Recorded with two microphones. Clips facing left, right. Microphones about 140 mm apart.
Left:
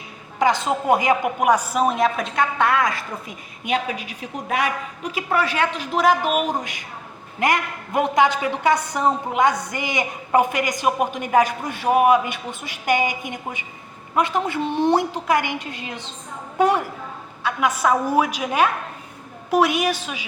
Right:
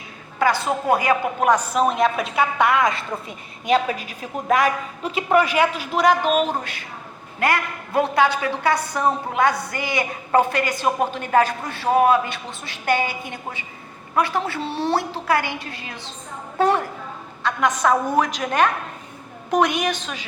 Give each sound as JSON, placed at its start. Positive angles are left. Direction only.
{"t": 0.3, "sound": "a woman's voice", "side_deg": 20}
{"t": 3.7, "sound": "a man's voice", "side_deg": -40}
{"t": 5.1, "sound": "a woman's voice", "side_deg": -20}